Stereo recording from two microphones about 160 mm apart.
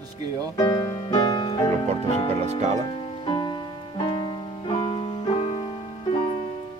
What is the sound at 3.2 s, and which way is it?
Music, 30° left (ahead or behind).